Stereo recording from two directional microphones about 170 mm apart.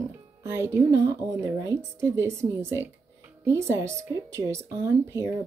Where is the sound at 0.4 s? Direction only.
15° right (ahead or behind).